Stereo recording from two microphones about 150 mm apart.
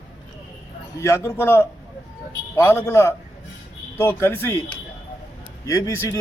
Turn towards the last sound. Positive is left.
turn(degrees=20)  # may be behind; listen again after turning